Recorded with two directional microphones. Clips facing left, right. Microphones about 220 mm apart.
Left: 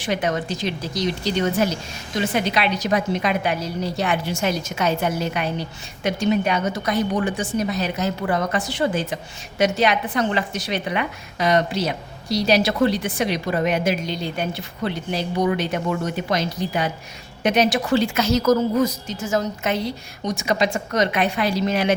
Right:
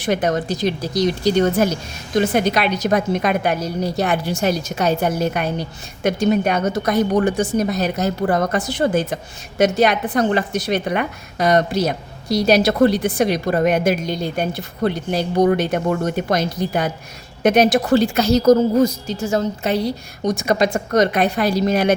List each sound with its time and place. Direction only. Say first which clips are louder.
0.0 s a woman's voice: right 4 dB; 45° right (ahead or behind)
20.2 s a woman's voice: right 4 dB; 45° right (ahead or behind)